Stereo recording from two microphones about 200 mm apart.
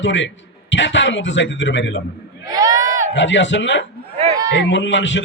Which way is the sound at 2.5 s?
20° right (ahead or behind).